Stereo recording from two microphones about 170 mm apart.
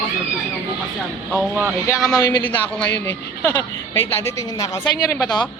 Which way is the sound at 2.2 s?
20° left (ahead or behind).